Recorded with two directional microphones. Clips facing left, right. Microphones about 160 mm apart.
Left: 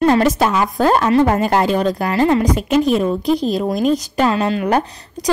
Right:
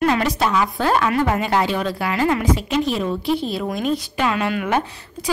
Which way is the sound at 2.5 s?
45° left (ahead or behind).